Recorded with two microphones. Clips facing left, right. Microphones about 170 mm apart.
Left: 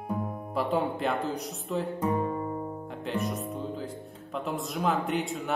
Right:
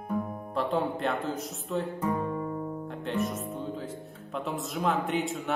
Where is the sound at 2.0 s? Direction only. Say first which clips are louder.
Left 1 dB; 30° left (ahead or behind).